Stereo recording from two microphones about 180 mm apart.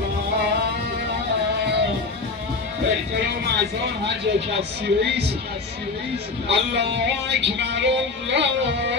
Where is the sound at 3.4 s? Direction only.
65° right (ahead or behind).